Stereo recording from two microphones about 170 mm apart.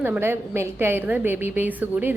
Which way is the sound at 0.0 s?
10° right (ahead or behind).